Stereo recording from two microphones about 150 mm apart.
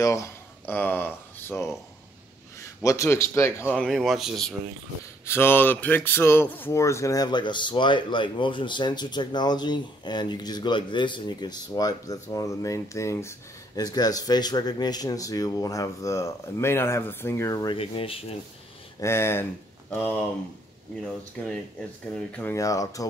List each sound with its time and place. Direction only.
0.0 s speech: 20° left (ahead or behind)
3.8 s speech: centre (ahead or behind)
5.2 s speech: 15° left (ahead or behind)
17.7 s speech: 35° left (ahead or behind)
18.9 s speech: 15° left (ahead or behind)
22.1 s speech: 5° left (ahead or behind)
22.5 s speech: 20° left (ahead or behind)